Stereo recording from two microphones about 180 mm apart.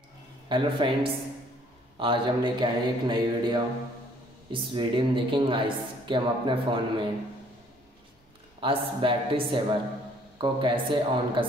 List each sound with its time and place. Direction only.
0.5 s a man's voice: 25° right (ahead or behind)
8.5 s a man's voice: 30° right (ahead or behind)